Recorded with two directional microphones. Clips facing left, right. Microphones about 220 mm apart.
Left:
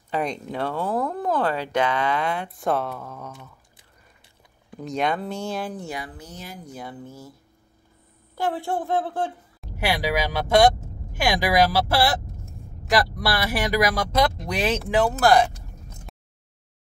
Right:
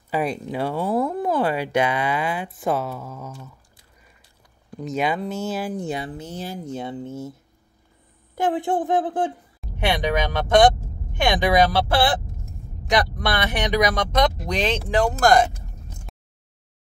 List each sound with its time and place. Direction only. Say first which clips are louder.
0.1 s speech: right 2 dB; 5° right (ahead or behind)
4.6 s speech: right 1 dB; centre (ahead or behind)
5.9 s speech: right 6 dB; 25° right (ahead or behind)
8.4 s speech: right 4 dB; 20° right (ahead or behind)
9.6 s a sound: right 2 dB; 5° left (ahead or behind)
11.1 s speech: right 2 dB; 5° left (ahead or behind)
12.9 s speech: right 1 dB; 5° left (ahead or behind)